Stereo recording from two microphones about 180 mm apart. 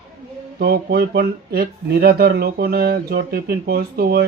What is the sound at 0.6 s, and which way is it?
Speech, 60° right (ahead or behind).